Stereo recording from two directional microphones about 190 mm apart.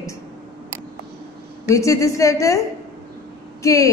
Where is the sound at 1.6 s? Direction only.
15° left (ahead or behind).